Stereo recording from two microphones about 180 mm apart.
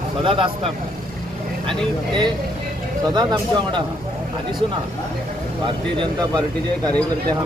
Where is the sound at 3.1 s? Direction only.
25° right (ahead or behind).